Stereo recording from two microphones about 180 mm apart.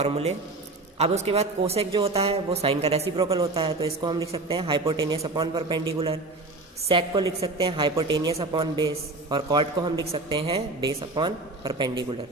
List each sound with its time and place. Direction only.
0.0 s a man's voice: 35° right (ahead or behind)
6.8 s a woman's voice: 25° right (ahead or behind)